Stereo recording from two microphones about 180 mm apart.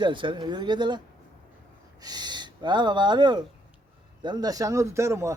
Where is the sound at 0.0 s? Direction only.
25° right (ahead or behind).